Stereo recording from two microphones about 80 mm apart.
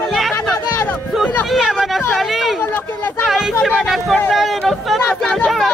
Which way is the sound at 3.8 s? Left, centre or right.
Centre.